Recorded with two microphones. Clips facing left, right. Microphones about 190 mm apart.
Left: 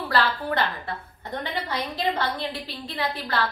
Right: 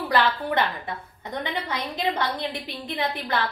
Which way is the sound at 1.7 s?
15° right (ahead or behind).